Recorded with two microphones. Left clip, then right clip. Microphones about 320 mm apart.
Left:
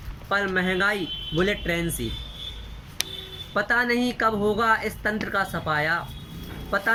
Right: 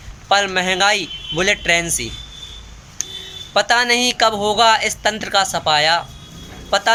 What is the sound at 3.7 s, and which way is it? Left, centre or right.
Speech, right.